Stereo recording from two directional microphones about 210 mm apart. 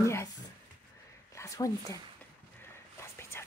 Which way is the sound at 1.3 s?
15° left (ahead or behind).